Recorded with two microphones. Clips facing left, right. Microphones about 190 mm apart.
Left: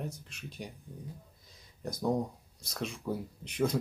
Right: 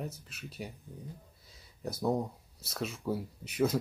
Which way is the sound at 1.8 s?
5° right (ahead or behind).